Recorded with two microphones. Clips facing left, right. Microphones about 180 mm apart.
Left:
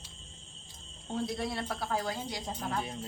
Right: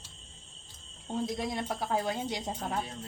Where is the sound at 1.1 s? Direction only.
15° right (ahead or behind).